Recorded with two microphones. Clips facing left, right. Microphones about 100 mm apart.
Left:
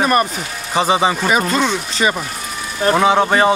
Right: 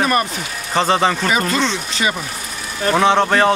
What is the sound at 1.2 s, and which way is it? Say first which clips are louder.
Speech: left 2 dB; 45° left (ahead or behind).